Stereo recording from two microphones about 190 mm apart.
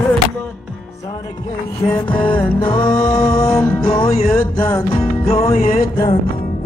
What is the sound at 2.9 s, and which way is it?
Music, 5° left (ahead or behind).